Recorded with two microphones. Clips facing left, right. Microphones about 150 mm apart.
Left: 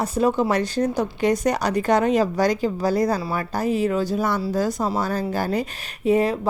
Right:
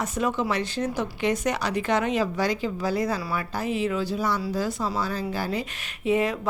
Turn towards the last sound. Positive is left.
turn(degrees=35)  # may be behind; listen again after turning